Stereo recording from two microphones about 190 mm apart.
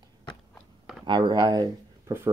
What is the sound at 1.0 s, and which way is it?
Speech, 25° right (ahead or behind).